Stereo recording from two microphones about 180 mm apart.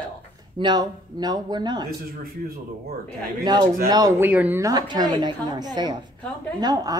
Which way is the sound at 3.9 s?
20° right (ahead or behind).